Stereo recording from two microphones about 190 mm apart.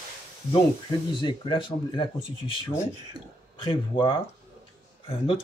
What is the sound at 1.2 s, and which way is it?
Speech, 25° left (ahead or behind).